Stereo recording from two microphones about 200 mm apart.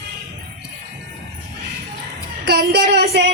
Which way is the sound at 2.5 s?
55° right (ahead or behind).